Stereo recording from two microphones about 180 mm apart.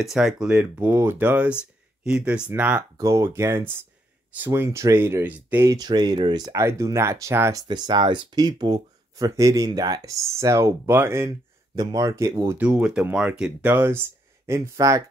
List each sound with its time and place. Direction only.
0.0 s speech: centre (ahead or behind); by 15.0 s 15° right (ahead or behind)